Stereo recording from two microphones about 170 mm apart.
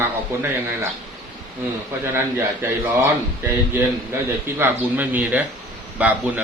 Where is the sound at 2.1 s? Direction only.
15° right (ahead or behind).